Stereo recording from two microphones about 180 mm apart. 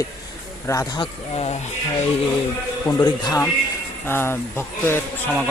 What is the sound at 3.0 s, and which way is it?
Speech, 15° left (ahead or behind).